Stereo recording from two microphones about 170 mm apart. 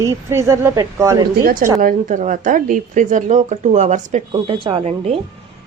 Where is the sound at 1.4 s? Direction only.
55° right (ahead or behind).